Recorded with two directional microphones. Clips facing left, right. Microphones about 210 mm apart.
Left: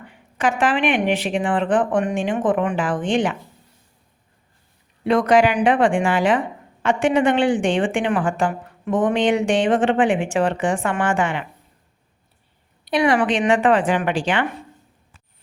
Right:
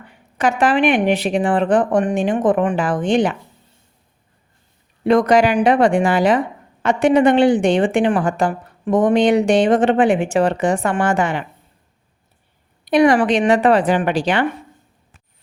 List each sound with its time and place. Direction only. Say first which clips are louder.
0.3 s a woman's voice: right 4 dB; 40° right (ahead or behind)
5.0 s a woman's voice: right 2 dB; 40° right (ahead or behind)
12.8 s a woman's voice: right 5 dB; 45° right (ahead or behind)